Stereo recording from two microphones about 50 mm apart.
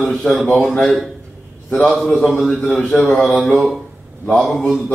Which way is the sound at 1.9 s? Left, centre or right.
Centre.